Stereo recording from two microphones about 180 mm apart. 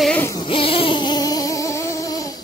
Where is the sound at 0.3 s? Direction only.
25° left (ahead or behind).